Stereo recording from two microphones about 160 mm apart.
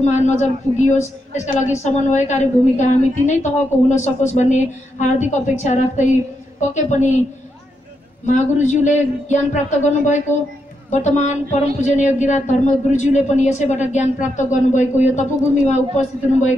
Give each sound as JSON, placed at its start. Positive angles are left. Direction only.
{"t": 0.0, "sound": "speech", "side_deg": 50}
{"t": 8.3, "sound": "speech", "side_deg": 50}